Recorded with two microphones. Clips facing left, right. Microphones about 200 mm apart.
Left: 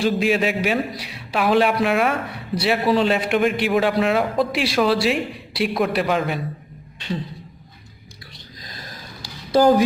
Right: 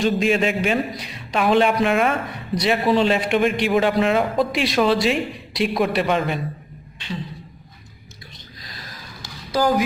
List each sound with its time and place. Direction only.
0.0 s a man's voice: 5° left (ahead or behind)
8.7 s snort: 45° left (ahead or behind)
9.5 s speech: 30° left (ahead or behind)